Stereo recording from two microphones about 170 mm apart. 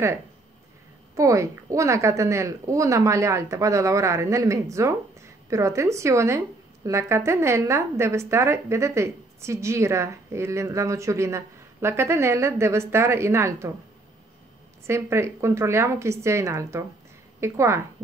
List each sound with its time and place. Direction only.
1.1 s a woman's voice: 20° right (ahead or behind)
14.9 s a woman's voice: 15° right (ahead or behind)